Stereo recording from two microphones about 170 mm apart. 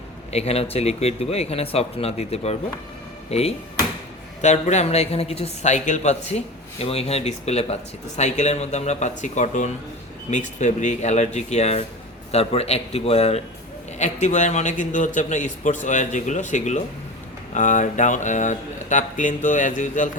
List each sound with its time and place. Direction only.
0.3 s a man's voice: 40° left (ahead or behind)